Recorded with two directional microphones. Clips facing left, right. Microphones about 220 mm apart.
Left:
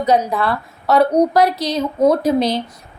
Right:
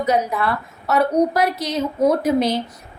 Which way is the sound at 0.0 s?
35° left (ahead or behind).